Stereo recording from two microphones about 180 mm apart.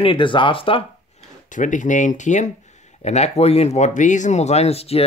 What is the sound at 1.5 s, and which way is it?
Speech, 45° left (ahead or behind).